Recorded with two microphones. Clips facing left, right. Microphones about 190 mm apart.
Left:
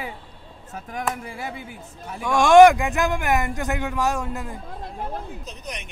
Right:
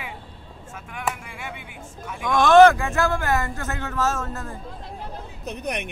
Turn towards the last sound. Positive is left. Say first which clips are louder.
# right 7 dB
turn(degrees=-60)  # may be behind; listen again after turning